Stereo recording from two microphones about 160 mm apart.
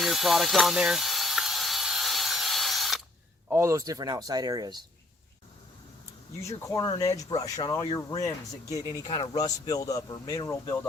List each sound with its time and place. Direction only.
0.0 s mechanisms: centre (ahead or behind)
3.5 s speech: 20° right (ahead or behind)
6.7 s speech: 20° left (ahead or behind)